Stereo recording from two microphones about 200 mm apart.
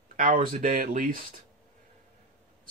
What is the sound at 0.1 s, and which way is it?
Speech, 45° right (ahead or behind).